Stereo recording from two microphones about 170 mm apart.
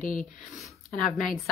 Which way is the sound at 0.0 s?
50° left (ahead or behind).